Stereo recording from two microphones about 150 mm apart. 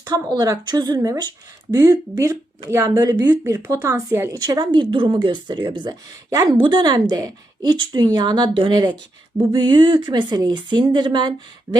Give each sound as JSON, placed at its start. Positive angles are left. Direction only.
{"t": 0.0, "sound": "speech", "side_deg": -25}